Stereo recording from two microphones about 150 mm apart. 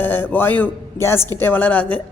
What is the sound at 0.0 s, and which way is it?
A man's voice, 15° left (ahead or behind).